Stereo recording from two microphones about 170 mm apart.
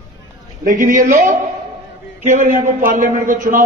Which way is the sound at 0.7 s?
50° right (ahead or behind).